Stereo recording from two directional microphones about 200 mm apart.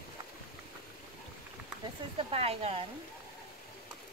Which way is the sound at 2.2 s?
30° right (ahead or behind).